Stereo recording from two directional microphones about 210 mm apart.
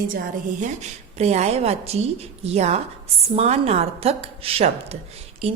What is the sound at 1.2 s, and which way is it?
A woman's voice, 30° right (ahead or behind).